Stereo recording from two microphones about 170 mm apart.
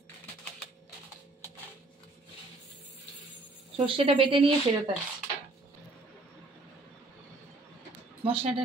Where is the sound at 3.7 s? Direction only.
30° right (ahead or behind).